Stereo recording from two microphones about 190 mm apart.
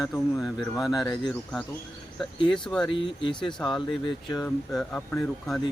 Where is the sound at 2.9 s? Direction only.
25° left (ahead or behind).